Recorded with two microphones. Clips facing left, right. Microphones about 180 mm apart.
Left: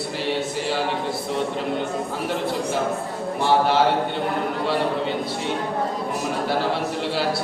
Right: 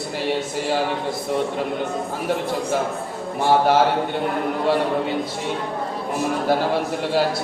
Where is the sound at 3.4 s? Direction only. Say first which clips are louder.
Right 2 dB; 45° right (ahead or behind).